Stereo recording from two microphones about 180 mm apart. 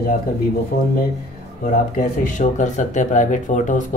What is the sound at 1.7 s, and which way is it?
Speech, 45° left (ahead or behind).